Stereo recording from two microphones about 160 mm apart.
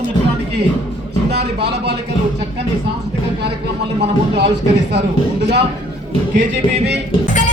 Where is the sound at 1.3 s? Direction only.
90° right.